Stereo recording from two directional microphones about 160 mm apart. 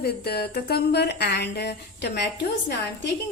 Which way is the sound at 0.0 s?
80° left.